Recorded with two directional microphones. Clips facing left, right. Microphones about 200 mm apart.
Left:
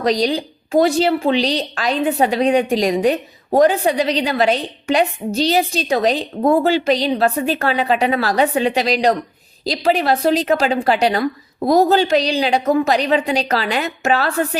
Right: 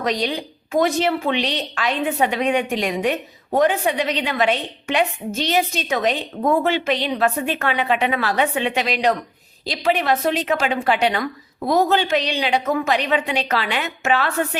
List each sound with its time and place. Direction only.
0.0 s a woman's voice: 35° left (ahead or behind)